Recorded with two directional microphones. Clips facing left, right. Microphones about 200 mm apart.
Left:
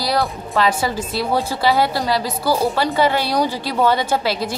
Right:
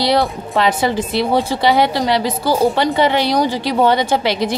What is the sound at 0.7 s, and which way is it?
A woman's voice, 20° right (ahead or behind).